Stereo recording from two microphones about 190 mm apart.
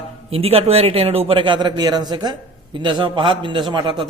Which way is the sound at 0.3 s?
30° right (ahead or behind).